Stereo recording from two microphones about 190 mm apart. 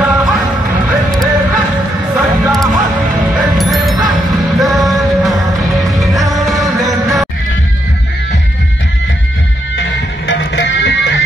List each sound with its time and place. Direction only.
0.0 s music: 5° right (ahead or behind)
9.8 s music: 70° left (ahead or behind)